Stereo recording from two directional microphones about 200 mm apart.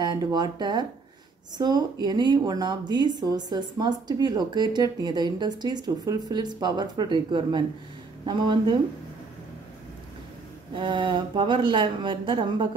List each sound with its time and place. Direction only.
0.0 s speech: 20° right (ahead or behind)
10.7 s speech: 25° right (ahead or behind)